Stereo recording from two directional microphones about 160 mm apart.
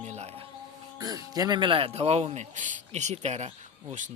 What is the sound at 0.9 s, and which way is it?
Speech, 25° right (ahead or behind).